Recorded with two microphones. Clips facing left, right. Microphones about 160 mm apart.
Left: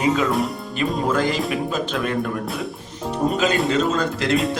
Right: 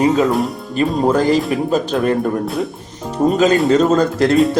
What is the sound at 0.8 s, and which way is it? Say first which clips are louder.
Speech: right 6 dB; 35° right (ahead or behind).